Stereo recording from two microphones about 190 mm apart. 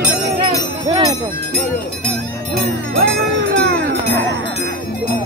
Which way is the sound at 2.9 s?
65° right (ahead or behind).